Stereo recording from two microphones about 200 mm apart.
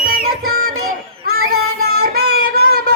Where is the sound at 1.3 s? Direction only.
50° right (ahead or behind).